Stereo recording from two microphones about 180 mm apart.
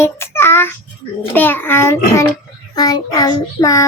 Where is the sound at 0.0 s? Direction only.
15° left (ahead or behind).